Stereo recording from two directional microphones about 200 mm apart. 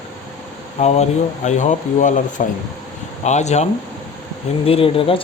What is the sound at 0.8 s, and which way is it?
Speech, 35° left (ahead or behind).